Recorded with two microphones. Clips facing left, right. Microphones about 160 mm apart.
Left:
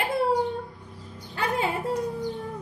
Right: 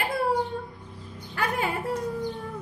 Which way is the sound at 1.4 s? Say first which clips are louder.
Left 1 dB; 25° left (ahead or behind).